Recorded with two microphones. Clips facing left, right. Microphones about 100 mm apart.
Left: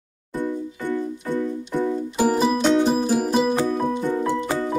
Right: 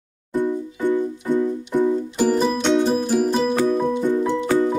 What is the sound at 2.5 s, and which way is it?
Music, 5° left (ahead or behind).